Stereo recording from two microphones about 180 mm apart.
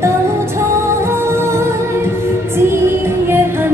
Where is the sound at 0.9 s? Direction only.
15° right (ahead or behind).